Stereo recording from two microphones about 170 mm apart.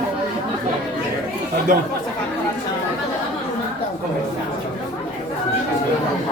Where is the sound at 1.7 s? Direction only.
55° right (ahead or behind).